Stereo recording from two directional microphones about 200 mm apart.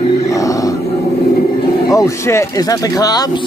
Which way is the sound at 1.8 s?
15° left (ahead or behind).